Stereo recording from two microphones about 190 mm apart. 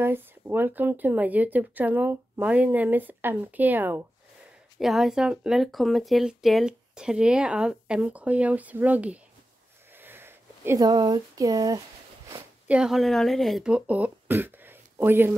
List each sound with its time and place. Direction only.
0.0 s speech: 10° right (ahead or behind)
9.9 s a sound: 10° right (ahead or behind)
12.6 s speech: 5° right (ahead or behind)